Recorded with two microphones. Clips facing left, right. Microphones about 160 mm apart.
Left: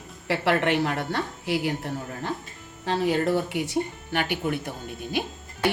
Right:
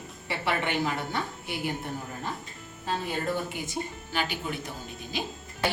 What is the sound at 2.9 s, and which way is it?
Speech, 85° left.